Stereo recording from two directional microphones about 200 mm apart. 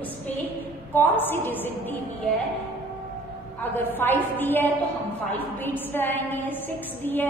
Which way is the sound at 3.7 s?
10° left (ahead or behind).